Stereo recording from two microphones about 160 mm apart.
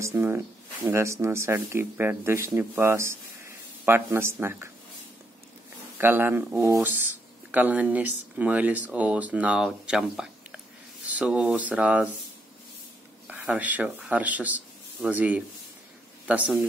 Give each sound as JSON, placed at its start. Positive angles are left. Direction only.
{"t": 0.0, "sound": "speech", "side_deg": -15}
{"t": 5.9, "sound": "speech", "side_deg": -10}
{"t": 13.3, "sound": "speech", "side_deg": -10}